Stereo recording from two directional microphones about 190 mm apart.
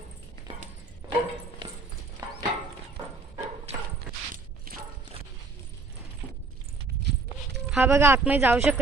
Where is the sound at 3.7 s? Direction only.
30° right (ahead or behind).